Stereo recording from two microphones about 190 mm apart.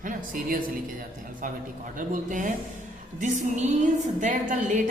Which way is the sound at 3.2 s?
40° right (ahead or behind).